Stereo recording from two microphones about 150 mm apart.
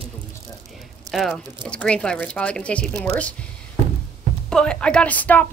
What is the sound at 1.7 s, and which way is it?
Speech, 5° left (ahead or behind).